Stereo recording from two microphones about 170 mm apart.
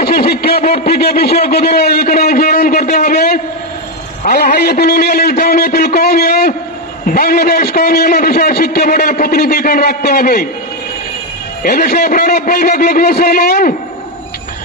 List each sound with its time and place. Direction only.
0.0 s a sound: 65° left (ahead or behind)
0.8 s a man's voice: 65° left (ahead or behind)
11.6 s a man's voice: 60° left (ahead or behind)